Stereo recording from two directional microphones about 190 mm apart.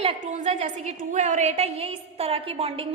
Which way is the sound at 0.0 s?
35° right (ahead or behind).